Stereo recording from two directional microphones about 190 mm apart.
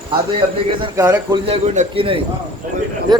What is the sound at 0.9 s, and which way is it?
Speech, 15° right (ahead or behind).